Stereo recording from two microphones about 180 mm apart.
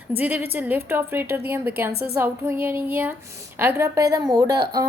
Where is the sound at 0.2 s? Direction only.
10° right (ahead or behind).